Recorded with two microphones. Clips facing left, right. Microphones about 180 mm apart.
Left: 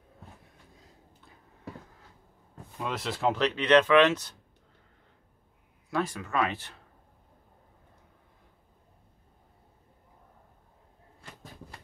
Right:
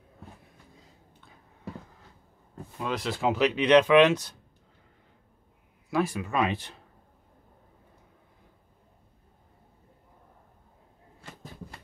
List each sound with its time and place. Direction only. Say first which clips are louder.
2.8 s speech: right 1 dB; centre (ahead or behind)
5.9 s speech: right 3 dB; 10° right (ahead or behind)